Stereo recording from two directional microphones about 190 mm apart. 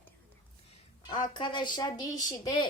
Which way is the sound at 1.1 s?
25° left (ahead or behind).